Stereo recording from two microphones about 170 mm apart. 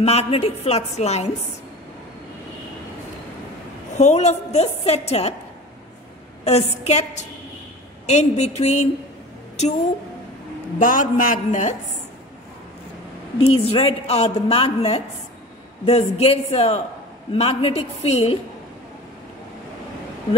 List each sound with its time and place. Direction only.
0.0 s a woman's voice: 40° left (ahead or behind)
3.9 s a woman's voice: 40° left (ahead or behind)
6.4 s a woman's voice: 40° left (ahead or behind)
10.8 s a man's voice: 50° left (ahead or behind)
13.4 s a woman's voice: 35° left (ahead or behind)